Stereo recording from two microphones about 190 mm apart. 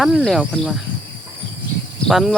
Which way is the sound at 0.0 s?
Centre (ahead or behind).